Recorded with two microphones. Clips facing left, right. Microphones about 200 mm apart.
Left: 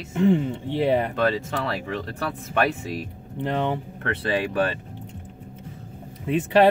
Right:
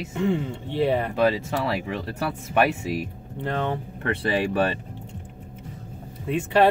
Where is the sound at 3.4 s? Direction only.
20° left (ahead or behind).